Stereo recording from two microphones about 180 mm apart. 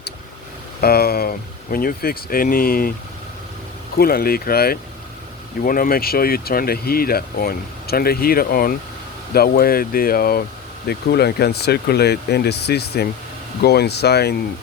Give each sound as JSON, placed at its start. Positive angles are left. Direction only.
{"t": 0.8, "sound": "speech", "side_deg": 60}
{"t": 3.9, "sound": "speech", "side_deg": 55}